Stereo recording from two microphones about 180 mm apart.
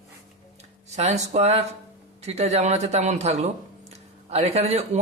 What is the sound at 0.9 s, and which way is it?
A man's voice, 40° right (ahead or behind).